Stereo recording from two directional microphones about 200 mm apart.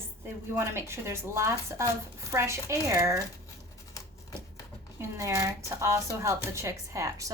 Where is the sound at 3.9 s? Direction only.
15° left (ahead or behind).